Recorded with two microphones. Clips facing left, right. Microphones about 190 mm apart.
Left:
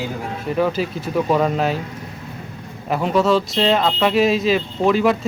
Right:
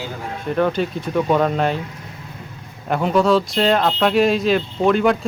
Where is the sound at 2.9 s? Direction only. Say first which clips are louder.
Right 1 dB; centre (ahead or behind).